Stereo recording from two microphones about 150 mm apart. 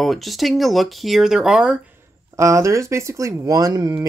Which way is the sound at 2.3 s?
20° right (ahead or behind).